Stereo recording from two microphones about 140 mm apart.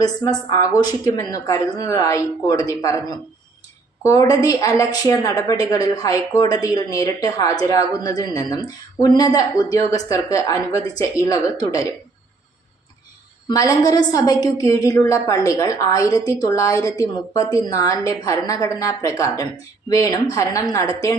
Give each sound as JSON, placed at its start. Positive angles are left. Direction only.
{"t": 0.0, "sound": "a woman's voice", "side_deg": 30}
{"t": 4.0, "sound": "a woman's voice", "side_deg": 25}
{"t": 13.5, "sound": "a woman's voice", "side_deg": 25}